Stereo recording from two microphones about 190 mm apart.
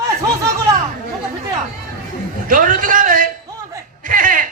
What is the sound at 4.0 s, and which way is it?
Laughter, 45° right (ahead or behind).